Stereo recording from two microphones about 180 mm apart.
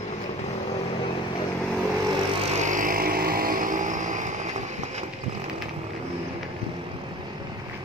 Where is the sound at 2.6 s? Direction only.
45° right (ahead or behind).